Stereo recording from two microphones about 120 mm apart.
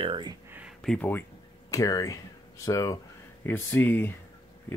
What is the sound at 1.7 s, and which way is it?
Speech, 30° left (ahead or behind).